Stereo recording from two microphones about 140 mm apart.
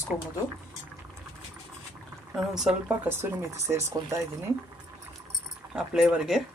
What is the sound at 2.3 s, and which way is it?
Speech, 5° right (ahead or behind).